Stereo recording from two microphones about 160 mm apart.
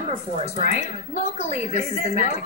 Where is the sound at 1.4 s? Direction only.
40° left (ahead or behind).